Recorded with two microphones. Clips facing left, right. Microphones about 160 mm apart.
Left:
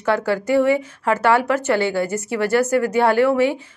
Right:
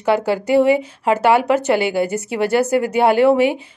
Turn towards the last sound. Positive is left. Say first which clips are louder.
# right 3 dB
turn(degrees=-20)  # may be behind; listen again after turning